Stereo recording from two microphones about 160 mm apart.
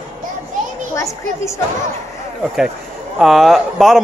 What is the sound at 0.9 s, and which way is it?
Children playing, 20° left (ahead or behind).